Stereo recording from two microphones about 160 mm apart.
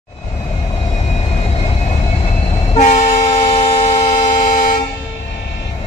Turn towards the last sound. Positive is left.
turn(degrees=50)  # may be behind; listen again after turning